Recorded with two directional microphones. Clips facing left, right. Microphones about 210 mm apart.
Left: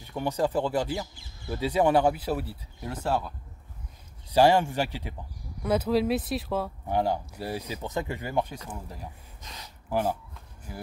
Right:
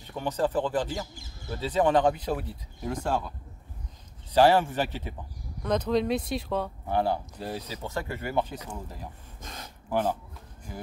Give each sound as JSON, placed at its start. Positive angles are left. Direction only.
{"t": 0.1, "sound": "speech", "side_deg": 10}
{"t": 4.3, "sound": "speech", "side_deg": 10}
{"t": 6.9, "sound": "speech", "side_deg": 15}
{"t": 9.4, "sound": "a sound", "side_deg": -50}
{"t": 9.8, "sound": "speech", "side_deg": 10}